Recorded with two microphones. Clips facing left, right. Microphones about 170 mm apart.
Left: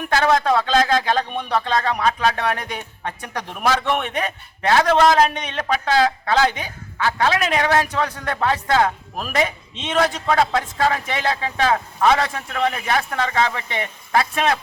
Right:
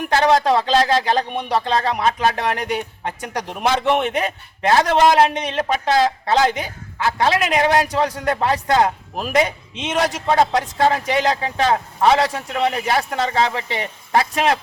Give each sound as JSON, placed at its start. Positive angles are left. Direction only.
{"t": 0.1, "sound": "speech", "side_deg": -25}
{"t": 1.4, "sound": "speech", "side_deg": -15}
{"t": 1.7, "sound": "speech", "side_deg": -30}